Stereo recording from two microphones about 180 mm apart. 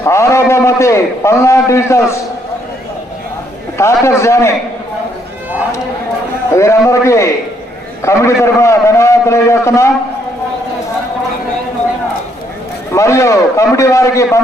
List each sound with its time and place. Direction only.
0.0 s a man's voice: 15° left (ahead or behind)
3.8 s a man's voice: 15° left (ahead or behind)
6.6 s a man's voice: 15° left (ahead or behind)
12.9 s a man's voice: 15° left (ahead or behind)